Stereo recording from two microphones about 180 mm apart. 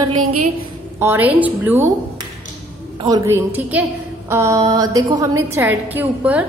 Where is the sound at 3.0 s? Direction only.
20° right (ahead or behind).